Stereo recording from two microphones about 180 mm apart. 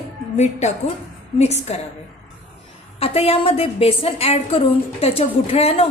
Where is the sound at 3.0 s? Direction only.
30° left (ahead or behind).